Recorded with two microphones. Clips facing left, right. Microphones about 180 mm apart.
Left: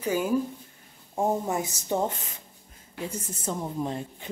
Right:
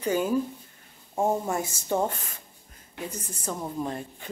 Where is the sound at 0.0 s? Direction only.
5° left (ahead or behind).